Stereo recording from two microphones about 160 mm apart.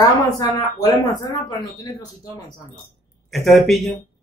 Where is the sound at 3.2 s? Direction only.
Centre (ahead or behind).